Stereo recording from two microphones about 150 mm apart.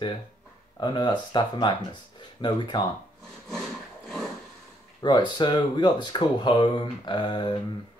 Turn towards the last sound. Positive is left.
turn(degrees=30)  # may be behind; listen again after turning